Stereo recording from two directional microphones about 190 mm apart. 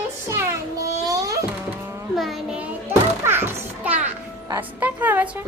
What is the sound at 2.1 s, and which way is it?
Speech, centre (ahead or behind).